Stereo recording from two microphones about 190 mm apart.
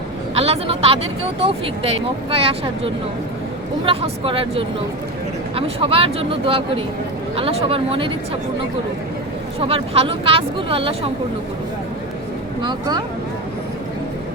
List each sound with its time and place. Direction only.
0.3 s speech: 30° right (ahead or behind)
9.6 s speech: 30° right (ahead or behind)